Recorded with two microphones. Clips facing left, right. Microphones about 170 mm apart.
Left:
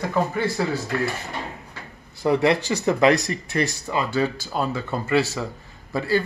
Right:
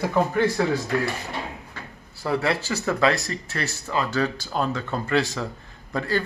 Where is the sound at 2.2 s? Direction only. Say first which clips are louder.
Left 5 dB; 20° left (ahead or behind).